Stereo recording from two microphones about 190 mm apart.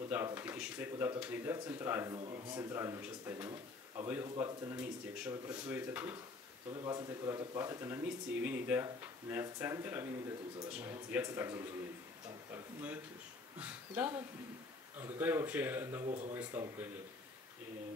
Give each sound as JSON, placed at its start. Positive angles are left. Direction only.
{"t": 0.1, "sound": "speech", "side_deg": -10}
{"t": 6.7, "sound": "speech", "side_deg": -20}
{"t": 16.1, "sound": "speech", "side_deg": -35}
{"t": 16.3, "sound": "speech", "side_deg": -10}